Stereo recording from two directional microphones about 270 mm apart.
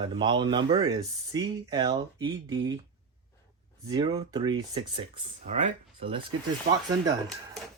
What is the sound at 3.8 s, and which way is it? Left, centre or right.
Speech, centre.